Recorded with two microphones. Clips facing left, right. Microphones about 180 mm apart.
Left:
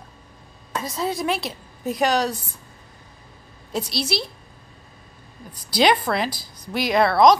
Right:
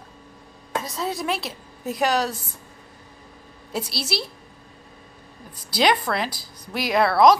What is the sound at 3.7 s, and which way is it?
Speech, 5° right (ahead or behind).